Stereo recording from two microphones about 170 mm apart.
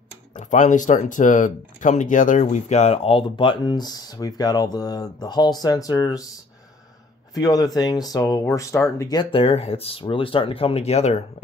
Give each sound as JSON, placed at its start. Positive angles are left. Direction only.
{"t": 0.4, "sound": "speech", "side_deg": 45}
{"t": 7.3, "sound": "speech", "side_deg": 20}